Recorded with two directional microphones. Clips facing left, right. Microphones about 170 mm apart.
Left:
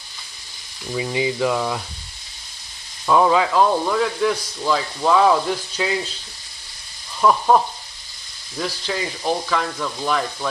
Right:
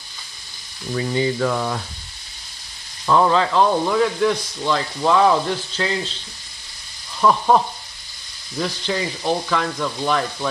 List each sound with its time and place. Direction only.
0.9 s speech: 10° left (ahead or behind)
3.1 s speech: 10° left (ahead or behind)
7.2 s speech: centre (ahead or behind)